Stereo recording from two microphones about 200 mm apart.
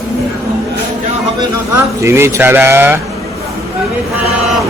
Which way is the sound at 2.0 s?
15° right (ahead or behind).